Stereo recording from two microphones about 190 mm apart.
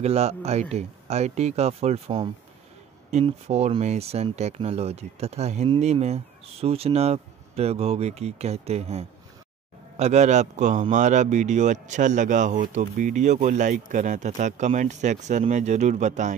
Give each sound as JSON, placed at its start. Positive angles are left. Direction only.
{"t": 0.0, "sound": "speech", "side_deg": -35}